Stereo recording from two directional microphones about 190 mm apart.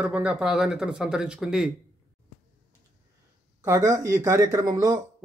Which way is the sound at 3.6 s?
15° right (ahead or behind).